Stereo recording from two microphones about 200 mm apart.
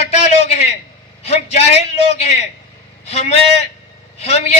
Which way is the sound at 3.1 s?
30° left (ahead or behind).